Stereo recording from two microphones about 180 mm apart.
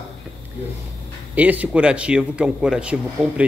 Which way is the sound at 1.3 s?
10° right (ahead or behind).